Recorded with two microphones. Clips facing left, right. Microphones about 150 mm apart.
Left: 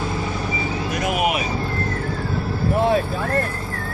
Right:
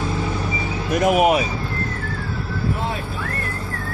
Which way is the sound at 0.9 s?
45° right (ahead or behind).